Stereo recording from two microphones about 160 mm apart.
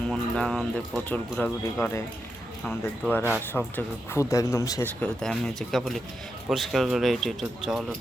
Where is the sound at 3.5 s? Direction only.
10° left (ahead or behind).